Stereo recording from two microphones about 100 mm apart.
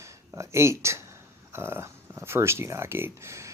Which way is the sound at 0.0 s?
30° right (ahead or behind).